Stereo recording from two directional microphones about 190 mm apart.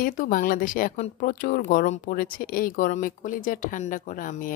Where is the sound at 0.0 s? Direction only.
45° left (ahead or behind).